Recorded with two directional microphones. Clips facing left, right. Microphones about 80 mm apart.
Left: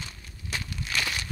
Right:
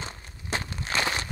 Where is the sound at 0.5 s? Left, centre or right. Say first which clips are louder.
Right 3 dB; right.